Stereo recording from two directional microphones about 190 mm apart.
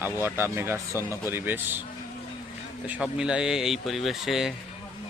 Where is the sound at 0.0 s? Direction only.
10° right (ahead or behind).